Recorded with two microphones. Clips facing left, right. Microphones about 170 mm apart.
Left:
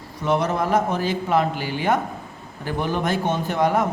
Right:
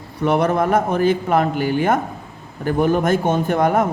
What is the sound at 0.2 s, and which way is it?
Speech, 55° right (ahead or behind).